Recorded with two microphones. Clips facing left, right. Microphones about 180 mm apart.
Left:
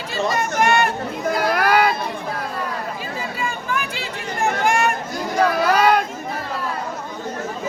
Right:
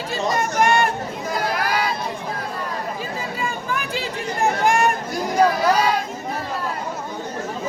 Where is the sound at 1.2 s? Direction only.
60° left (ahead or behind).